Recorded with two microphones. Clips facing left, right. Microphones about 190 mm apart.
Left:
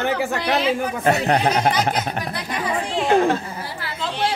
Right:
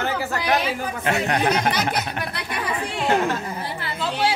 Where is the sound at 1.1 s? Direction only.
35° left (ahead or behind).